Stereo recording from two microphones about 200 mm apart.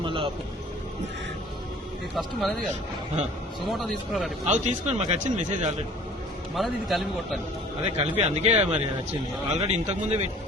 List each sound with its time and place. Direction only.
0.0 s a sound: 25° right (ahead or behind)
2.1 s a man's voice: centre (ahead or behind)
3.7 s a man's voice: centre (ahead or behind)
4.4 s a man's voice: 35° right (ahead or behind)
6.6 s a man's voice: centre (ahead or behind)
7.8 s a man's voice: 30° right (ahead or behind)